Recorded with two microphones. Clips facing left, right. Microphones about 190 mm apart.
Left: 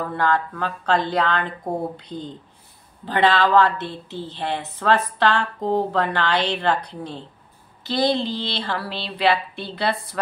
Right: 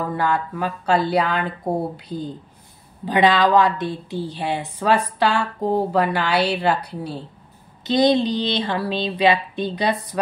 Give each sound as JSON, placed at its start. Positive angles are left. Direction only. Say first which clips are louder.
{"t": 0.1, "sound": "a woman's voice", "louder": "even", "side_deg": -10}
{"t": 7.8, "sound": "speech", "louder": "right 5 dB", "side_deg": -20}